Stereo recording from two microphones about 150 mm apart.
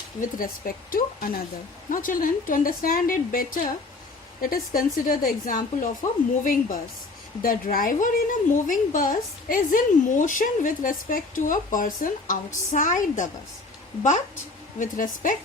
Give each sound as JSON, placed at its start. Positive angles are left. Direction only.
{"t": 0.2, "sound": "a woman's voice", "side_deg": 70}
{"t": 14.8, "sound": "a woman's voice", "side_deg": 60}